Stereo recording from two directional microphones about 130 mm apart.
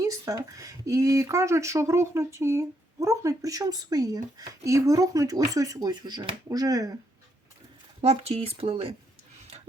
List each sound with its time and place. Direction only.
0.0 s speech: 25° right (ahead or behind)
8.0 s speech: 50° right (ahead or behind)